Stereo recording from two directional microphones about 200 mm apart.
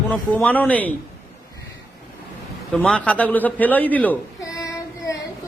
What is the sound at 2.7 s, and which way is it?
A man's voice, 5° left (ahead or behind).